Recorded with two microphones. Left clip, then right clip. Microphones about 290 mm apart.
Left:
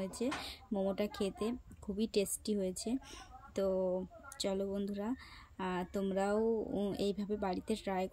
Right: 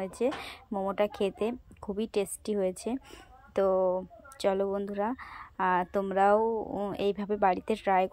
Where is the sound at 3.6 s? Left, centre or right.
Centre.